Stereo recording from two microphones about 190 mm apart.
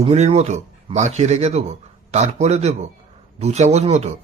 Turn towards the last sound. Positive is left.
turn(degrees=-35)  # may be behind; listen again after turning